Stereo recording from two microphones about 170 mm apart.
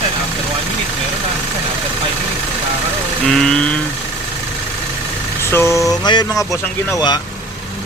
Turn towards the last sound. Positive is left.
turn(degrees=25)  # may be behind; listen again after turning